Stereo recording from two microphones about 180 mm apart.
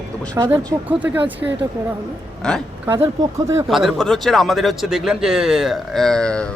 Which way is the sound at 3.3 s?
15° right (ahead or behind).